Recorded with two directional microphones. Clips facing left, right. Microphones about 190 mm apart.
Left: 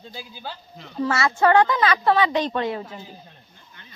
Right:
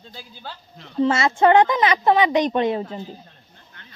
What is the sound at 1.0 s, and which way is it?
A woman's voice, 25° right (ahead or behind).